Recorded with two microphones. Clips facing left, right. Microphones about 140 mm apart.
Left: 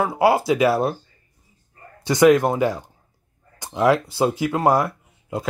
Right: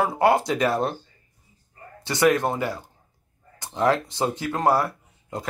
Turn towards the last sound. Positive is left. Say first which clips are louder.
# left 5 dB
turn(degrees=15)  # may be behind; listen again after turning